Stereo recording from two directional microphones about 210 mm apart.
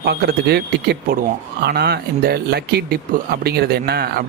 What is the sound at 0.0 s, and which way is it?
Speech, 50° right (ahead or behind).